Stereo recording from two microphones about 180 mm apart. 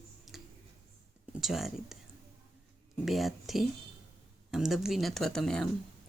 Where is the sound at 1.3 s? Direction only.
Centre (ahead or behind).